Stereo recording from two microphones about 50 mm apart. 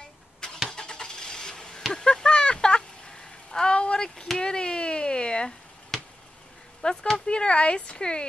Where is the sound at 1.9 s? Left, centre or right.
Centre.